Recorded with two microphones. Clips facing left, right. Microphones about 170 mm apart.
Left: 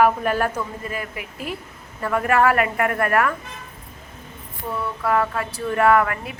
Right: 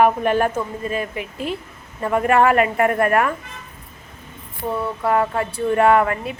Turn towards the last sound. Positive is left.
turn(degrees=-25)  # may be behind; listen again after turning